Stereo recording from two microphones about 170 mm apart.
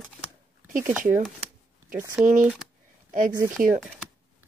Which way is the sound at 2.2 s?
10° right (ahead or behind).